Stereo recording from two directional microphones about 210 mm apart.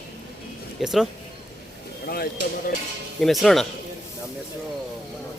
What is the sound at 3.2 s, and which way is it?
Speech, centre (ahead or behind).